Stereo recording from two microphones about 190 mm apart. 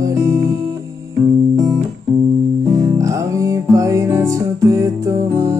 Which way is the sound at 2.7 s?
15° right (ahead or behind).